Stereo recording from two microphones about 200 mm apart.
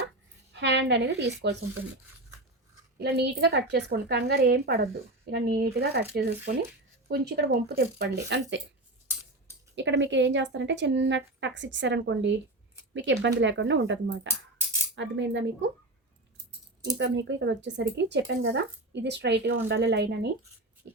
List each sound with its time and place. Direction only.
0.5 s a woman's voice: 60° right (ahead or behind)
3.0 s a woman's voice: 55° right (ahead or behind)
9.7 s speech: 65° right (ahead or behind)
16.8 s speech: 60° right (ahead or behind)
20.8 s dog: 60° right (ahead or behind)